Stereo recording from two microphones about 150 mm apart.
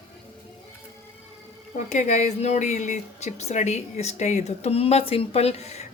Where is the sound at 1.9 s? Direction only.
55° left (ahead or behind).